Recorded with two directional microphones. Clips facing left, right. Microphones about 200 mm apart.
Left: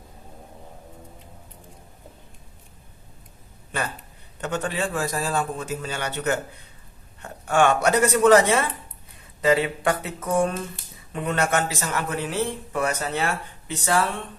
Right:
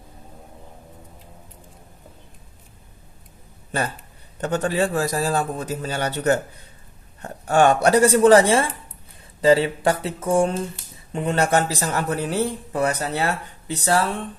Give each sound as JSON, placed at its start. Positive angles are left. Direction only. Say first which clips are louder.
{"t": 4.4, "sound": "speech", "louder": "right 5 dB", "side_deg": -40}